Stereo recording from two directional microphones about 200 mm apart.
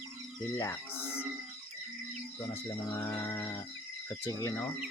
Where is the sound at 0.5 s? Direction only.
15° left (ahead or behind).